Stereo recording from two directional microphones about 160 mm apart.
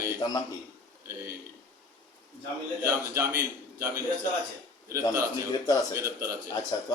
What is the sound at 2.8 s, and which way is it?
A man's voice, 15° right (ahead or behind).